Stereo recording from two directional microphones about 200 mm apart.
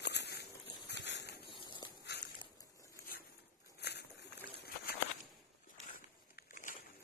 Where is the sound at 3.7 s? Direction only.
55° left (ahead or behind).